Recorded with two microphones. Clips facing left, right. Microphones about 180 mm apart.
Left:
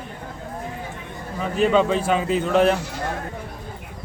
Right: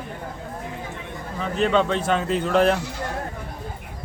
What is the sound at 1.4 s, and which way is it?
A man's voice, 5° left (ahead or behind).